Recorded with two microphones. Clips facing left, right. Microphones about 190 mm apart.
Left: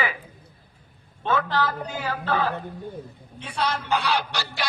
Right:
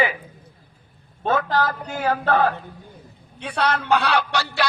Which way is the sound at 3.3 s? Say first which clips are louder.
Right 4 dB; 65° right (ahead or behind).